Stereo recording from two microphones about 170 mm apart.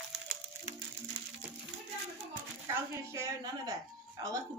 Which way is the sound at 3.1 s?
15° right (ahead or behind).